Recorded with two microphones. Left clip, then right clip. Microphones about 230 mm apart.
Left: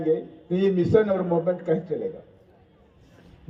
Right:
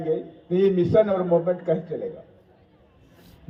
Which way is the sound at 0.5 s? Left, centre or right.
Left.